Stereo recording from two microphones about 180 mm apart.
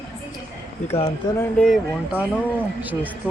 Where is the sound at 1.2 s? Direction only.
25° left (ahead or behind).